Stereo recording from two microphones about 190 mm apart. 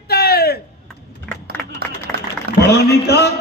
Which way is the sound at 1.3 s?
5° left (ahead or behind).